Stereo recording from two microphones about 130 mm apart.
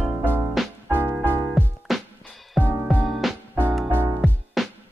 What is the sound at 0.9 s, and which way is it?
Music, 20° right (ahead or behind).